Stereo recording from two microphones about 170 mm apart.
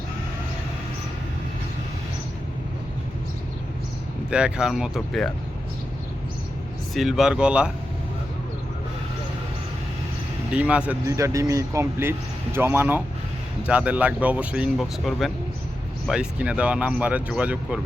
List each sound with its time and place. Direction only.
4.3 s speech: 5° right (ahead or behind)
6.9 s speech: centre (ahead or behind)
10.5 s speech: 5° right (ahead or behind)
11.0 s speech: 20° right (ahead or behind)